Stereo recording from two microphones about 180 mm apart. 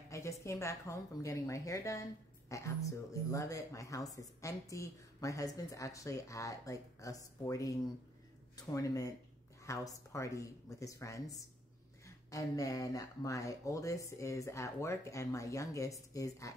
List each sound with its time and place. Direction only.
0.1 s speech: 15° left (ahead or behind)